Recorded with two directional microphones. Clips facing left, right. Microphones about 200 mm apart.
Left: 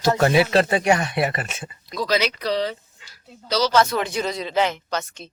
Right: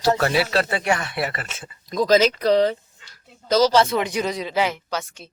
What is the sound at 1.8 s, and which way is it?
Speech, 45° right (ahead or behind).